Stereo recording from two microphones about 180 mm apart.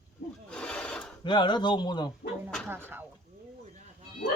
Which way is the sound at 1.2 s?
25° left (ahead or behind).